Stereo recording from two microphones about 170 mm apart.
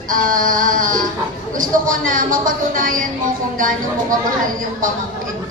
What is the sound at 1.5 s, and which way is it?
A woman's voice, 50° right (ahead or behind).